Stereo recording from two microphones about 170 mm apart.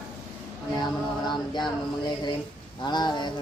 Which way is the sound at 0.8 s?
25° left (ahead or behind).